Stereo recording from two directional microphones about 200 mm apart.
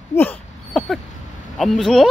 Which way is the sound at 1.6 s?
Centre (ahead or behind).